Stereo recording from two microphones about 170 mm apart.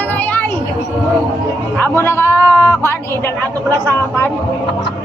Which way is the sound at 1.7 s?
15° left (ahead or behind).